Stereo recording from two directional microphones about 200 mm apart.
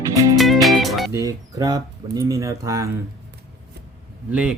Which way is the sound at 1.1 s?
15° right (ahead or behind).